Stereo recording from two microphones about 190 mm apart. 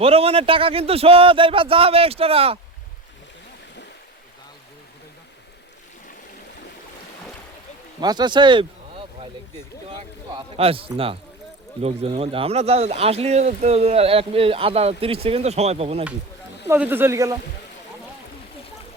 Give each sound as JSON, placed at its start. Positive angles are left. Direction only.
{"t": 0.0, "sound": "speech", "side_deg": -30}
{"t": 8.0, "sound": "speech", "side_deg": -20}
{"t": 10.3, "sound": "speech", "side_deg": -30}
{"t": 16.6, "sound": "speech", "side_deg": -10}